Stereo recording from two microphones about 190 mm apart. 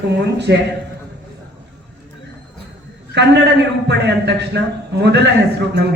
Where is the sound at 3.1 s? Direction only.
65° right (ahead or behind).